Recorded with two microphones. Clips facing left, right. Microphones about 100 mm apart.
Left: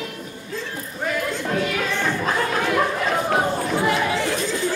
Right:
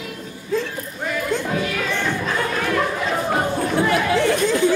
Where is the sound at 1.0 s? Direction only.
Centre (ahead or behind).